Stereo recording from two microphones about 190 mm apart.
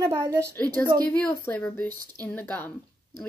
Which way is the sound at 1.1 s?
10° left (ahead or behind).